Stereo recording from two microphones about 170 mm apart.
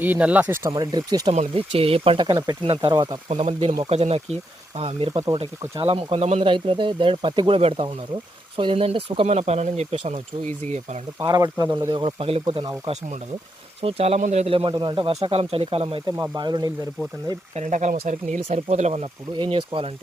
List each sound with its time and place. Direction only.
0.0 s speech: 10° right (ahead or behind)
0.7 s speech: 25° right (ahead or behind)
1.3 s speech: 35° right (ahead or behind)
3.2 s speech: 35° right (ahead or behind)
11.2 s speech: 20° right (ahead or behind)
13.8 s speech: 35° right (ahead or behind)
16.1 s speech: 20° right (ahead or behind)
17.5 s speech: 45° right (ahead or behind)
19.4 s speech: 30° right (ahead or behind)